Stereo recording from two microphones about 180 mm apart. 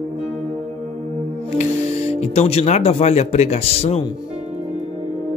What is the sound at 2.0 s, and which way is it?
Speech, 35° left (ahead or behind).